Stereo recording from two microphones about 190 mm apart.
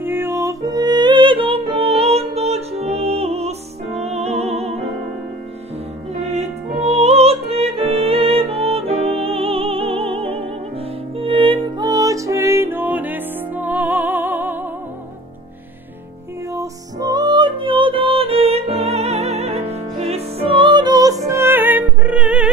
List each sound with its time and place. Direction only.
0.0 s music: 10° right (ahead or behind); by 4.8 s 35° right (ahead or behind)
6.2 s music: 35° right (ahead or behind); by 14.6 s 10° right (ahead or behind)
16.5 s music: 20° right (ahead or behind)